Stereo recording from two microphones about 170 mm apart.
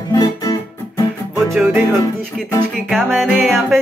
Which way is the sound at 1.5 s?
5° right (ahead or behind).